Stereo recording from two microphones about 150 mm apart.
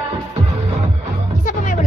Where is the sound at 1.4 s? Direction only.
60° left (ahead or behind).